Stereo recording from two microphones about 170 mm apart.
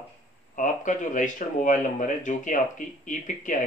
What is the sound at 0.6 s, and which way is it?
Speech, 50° left (ahead or behind).